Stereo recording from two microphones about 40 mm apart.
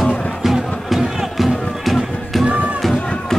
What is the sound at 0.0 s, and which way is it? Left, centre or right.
Music, centre.